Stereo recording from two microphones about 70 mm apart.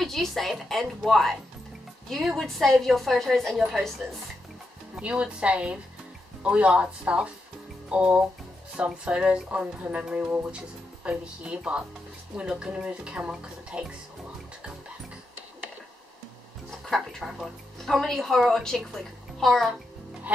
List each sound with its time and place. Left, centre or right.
0.0 s a woman's voice: centre
4.9 s speech: centre
16.9 s a woman's voice: centre